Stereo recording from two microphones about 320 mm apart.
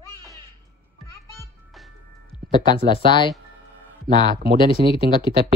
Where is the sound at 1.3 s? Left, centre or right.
Centre.